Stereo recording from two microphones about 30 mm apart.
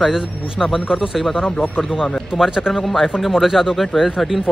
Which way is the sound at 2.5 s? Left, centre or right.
Centre.